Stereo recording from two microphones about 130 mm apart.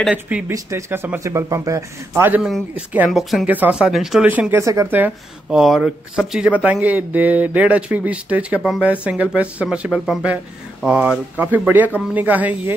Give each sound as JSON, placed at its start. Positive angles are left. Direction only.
{"t": 0.0, "sound": "speech", "side_deg": -5}
{"t": 0.5, "sound": "a man's voice", "side_deg": -20}
{"t": 2.4, "sound": "speech", "side_deg": -5}
{"t": 3.1, "sound": "a woman's voice", "side_deg": 0}
{"t": 3.4, "sound": "speech", "side_deg": -15}
{"t": 4.3, "sound": "speech", "side_deg": -15}
{"t": 5.0, "sound": "speech", "side_deg": -5}